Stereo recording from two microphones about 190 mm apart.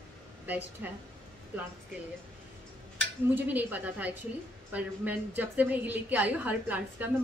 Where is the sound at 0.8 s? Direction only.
10° right (ahead or behind).